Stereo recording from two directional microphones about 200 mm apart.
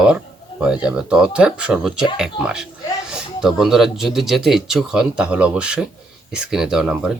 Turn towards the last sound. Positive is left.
turn(degrees=-5)  # may be behind; listen again after turning